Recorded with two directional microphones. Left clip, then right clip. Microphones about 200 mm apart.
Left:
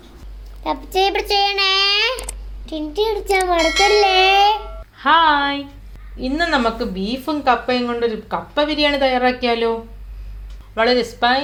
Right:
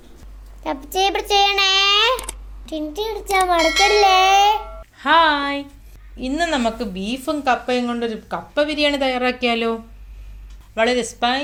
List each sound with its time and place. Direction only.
0.6 s a child's voice: 20° right (ahead or behind)
4.9 s a woman's voice: 30° right (ahead or behind)
10.8 s a woman's voice: 30° right (ahead or behind)